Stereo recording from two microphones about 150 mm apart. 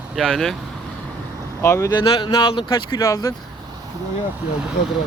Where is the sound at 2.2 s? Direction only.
30° left (ahead or behind).